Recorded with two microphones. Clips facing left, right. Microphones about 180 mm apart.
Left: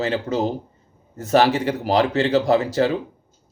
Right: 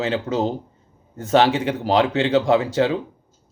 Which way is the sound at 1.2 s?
40° left (ahead or behind).